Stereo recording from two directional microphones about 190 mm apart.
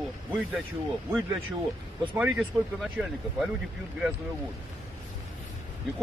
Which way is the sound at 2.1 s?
5° right (ahead or behind).